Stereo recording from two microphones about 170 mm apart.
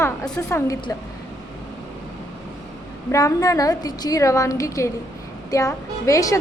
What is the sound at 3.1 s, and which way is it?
A woman's voice, 20° left (ahead or behind).